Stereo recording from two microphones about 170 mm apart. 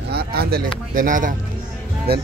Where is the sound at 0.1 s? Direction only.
65° right (ahead or behind); by 1.3 s 50° right (ahead or behind).